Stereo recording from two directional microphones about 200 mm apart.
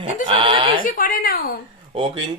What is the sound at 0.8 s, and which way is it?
Speech, 45° left (ahead or behind).